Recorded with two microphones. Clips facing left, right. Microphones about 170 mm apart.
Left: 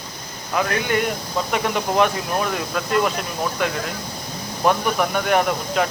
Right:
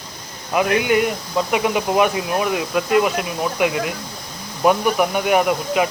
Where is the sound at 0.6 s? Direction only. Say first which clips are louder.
Right 4 dB; 15° right (ahead or behind).